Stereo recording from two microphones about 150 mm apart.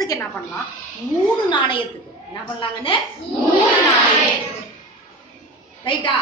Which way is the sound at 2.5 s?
35° left (ahead or behind).